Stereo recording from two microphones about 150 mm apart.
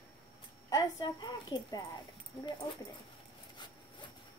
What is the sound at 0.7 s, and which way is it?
A woman's voice, 25° left (ahead or behind).